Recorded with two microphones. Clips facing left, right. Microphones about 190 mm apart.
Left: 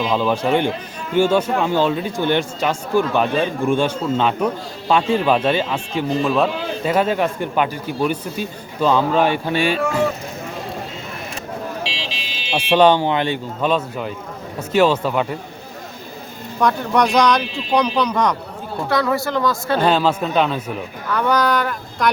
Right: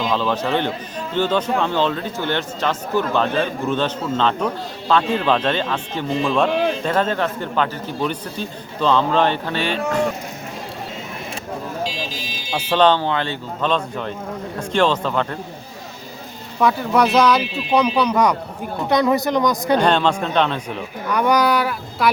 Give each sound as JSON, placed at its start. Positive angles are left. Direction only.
{"t": 0.1, "sound": "speech", "side_deg": 10}
{"t": 11.8, "sound": "buzzer", "side_deg": 70}
{"t": 12.7, "sound": "speech", "side_deg": 15}
{"t": 16.6, "sound": "speech", "side_deg": -5}
{"t": 19.8, "sound": "a man's voice", "side_deg": 5}
{"t": 21.1, "sound": "speech", "side_deg": -15}